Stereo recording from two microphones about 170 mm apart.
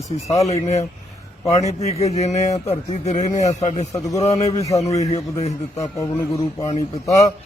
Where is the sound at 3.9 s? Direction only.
20° left (ahead or behind).